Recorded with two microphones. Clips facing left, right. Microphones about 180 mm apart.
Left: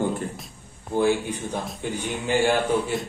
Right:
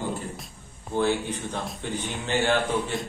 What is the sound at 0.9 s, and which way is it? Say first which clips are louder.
A man's voice: left 3 dB; 10° left (ahead or behind).